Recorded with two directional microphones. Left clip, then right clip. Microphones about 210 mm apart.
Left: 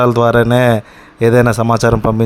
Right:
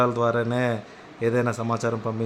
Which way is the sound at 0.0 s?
45° left (ahead or behind).